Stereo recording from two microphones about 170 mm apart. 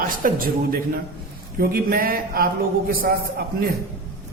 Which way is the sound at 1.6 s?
60° right (ahead or behind).